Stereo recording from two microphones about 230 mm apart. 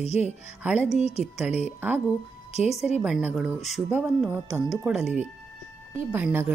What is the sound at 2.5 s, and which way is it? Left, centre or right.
Speech, left.